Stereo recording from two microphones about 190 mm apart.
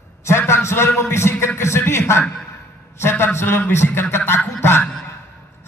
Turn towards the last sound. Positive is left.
turn(degrees=10)  # may be behind; listen again after turning